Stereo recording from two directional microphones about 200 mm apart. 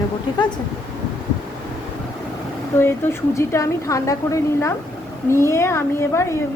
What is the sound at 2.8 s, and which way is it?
A woman's voice, 10° left (ahead or behind).